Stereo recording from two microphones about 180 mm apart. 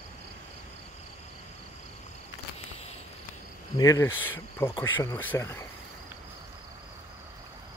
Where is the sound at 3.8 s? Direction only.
20° left (ahead or behind).